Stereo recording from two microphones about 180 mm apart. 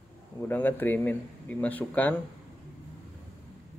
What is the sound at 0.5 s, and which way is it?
Mantra, 10° left (ahead or behind).